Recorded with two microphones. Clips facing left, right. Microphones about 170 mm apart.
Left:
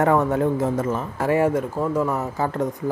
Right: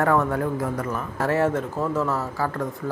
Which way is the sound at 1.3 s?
10° left (ahead or behind).